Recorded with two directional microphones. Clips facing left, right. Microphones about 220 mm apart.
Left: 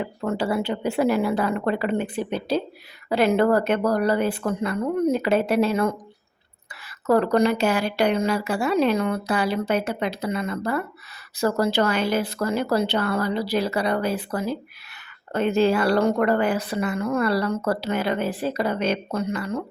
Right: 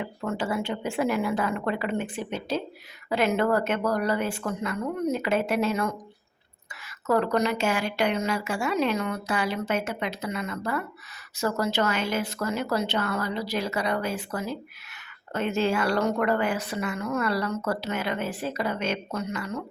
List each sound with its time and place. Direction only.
0.0 s a woman's voice: 35° left (ahead or behind)